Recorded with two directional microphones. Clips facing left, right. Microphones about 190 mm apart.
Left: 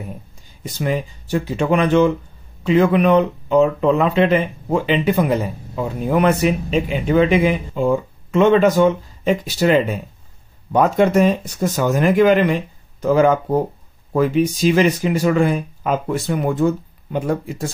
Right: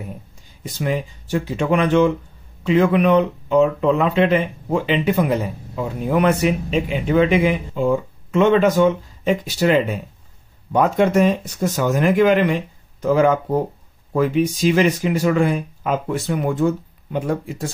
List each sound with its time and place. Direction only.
0.7 s speech: 35° left (ahead or behind)